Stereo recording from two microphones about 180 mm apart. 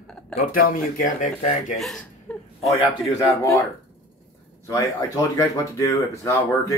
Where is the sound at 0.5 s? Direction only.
50° left (ahead or behind).